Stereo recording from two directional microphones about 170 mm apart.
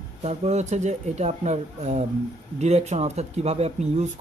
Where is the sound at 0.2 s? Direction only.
40° right (ahead or behind).